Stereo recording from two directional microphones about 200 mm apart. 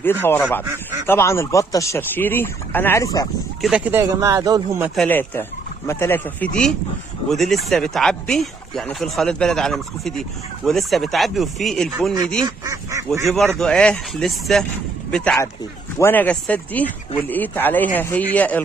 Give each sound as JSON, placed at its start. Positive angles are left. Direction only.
{"t": 0.0, "sound": "speech", "side_deg": 10}
{"t": 3.6, "sound": "speech", "side_deg": -5}
{"t": 5.0, "sound": "speech", "side_deg": 10}
{"t": 12.4, "sound": "speech", "side_deg": -15}
{"t": 13.6, "sound": "speech", "side_deg": 5}